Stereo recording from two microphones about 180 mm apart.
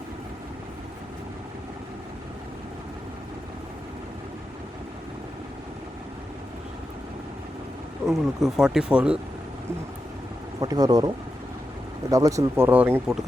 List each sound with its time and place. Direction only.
8.0 s speech: centre (ahead or behind)
10.6 s speech: 20° right (ahead or behind)
12.1 s speech: 20° right (ahead or behind)